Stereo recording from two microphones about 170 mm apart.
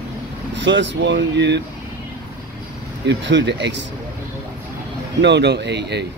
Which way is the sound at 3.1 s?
90° right.